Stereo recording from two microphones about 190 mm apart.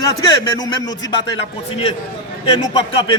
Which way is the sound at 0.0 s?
20° left (ahead or behind).